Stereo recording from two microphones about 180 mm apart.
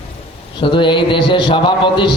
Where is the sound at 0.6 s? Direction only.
25° left (ahead or behind).